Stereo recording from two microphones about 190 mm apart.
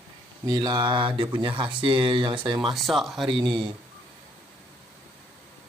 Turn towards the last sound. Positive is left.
turn(degrees=-25)  # may be behind; listen again after turning